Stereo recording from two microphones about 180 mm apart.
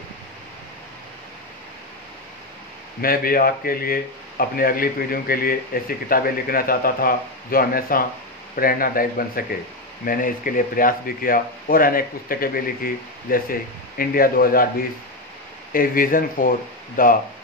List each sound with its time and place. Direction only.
3.0 s speech: 55° left (ahead or behind)
15.7 s speech: 50° left (ahead or behind)